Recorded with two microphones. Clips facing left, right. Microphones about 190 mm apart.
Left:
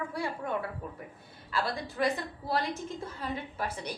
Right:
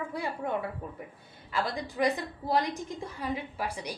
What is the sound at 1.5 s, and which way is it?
A woman's voice, 15° right (ahead or behind).